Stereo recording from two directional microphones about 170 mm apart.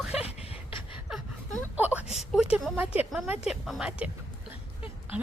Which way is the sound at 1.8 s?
10° right (ahead or behind).